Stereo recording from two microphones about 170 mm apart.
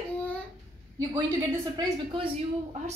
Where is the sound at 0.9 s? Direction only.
20° right (ahead or behind).